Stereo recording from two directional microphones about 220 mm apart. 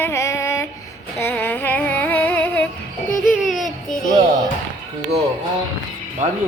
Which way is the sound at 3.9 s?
35° left (ahead or behind).